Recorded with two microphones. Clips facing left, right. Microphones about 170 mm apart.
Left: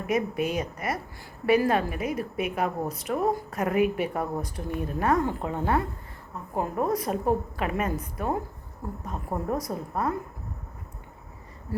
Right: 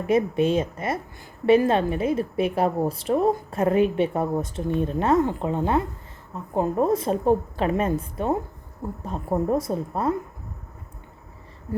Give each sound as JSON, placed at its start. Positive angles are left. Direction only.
{"t": 0.1, "sound": "a woman's voice", "side_deg": -25}